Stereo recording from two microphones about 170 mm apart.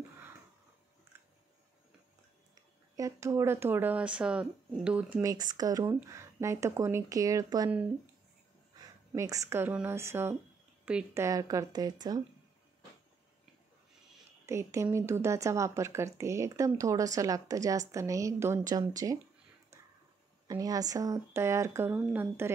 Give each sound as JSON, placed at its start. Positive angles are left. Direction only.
{"t": 2.5, "sound": "speech", "side_deg": -20}
{"t": 5.2, "sound": "speech", "side_deg": -20}
{"t": 9.1, "sound": "speech", "side_deg": -20}
{"t": 11.2, "sound": "speech", "side_deg": -20}
{"t": 14.4, "sound": "speech", "side_deg": -15}
{"t": 20.4, "sound": "speech", "side_deg": -20}